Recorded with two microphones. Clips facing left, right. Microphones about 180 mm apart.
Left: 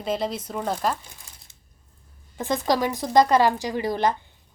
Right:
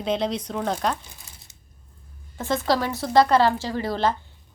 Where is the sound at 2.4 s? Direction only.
15° left (ahead or behind).